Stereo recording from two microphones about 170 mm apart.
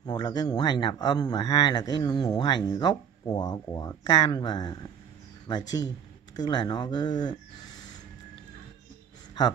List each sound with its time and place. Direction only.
0.0 s speech: 25° left (ahead or behind)